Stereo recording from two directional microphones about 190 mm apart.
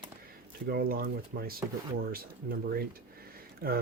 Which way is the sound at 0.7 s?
55° right (ahead or behind).